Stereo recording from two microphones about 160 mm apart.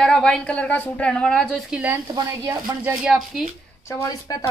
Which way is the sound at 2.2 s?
25° right (ahead or behind).